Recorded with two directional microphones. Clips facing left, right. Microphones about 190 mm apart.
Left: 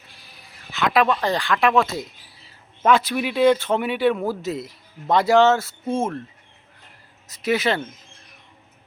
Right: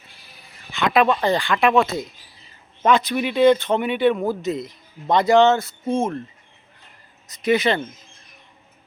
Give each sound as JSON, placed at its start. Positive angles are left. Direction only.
{"t": 0.7, "sound": "speech", "side_deg": 0}
{"t": 7.3, "sound": "speech", "side_deg": 5}